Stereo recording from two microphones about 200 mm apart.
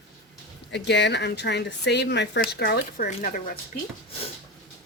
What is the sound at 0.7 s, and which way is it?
Speech, 60° left (ahead or behind).